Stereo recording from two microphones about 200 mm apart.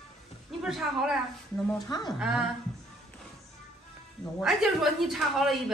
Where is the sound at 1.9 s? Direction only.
20° left (ahead or behind).